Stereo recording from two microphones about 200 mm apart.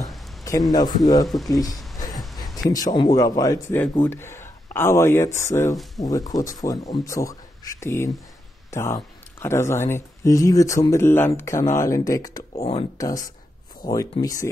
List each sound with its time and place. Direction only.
0.0 s a sound: centre (ahead or behind)
0.4 s speech: 15° left (ahead or behind)
2.0 s music: 20° left (ahead or behind)
2.7 s speech: 20° left (ahead or behind)
12.5 s speech: 30° left (ahead or behind)
12.9 s speech: 15° left (ahead or behind)
14.2 s speech: 15° left (ahead or behind)